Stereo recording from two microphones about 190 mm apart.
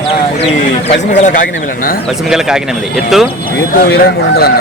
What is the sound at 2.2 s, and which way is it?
Speech, 5° right (ahead or behind).